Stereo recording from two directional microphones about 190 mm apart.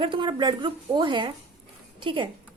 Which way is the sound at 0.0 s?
25° right (ahead or behind).